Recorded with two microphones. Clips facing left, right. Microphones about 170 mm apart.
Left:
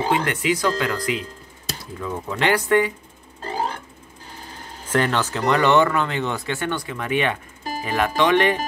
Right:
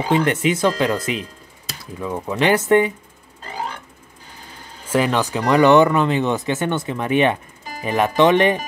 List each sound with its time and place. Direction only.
0.1 s speech: 25° right (ahead or behind)
4.8 s speech: 10° right (ahead or behind)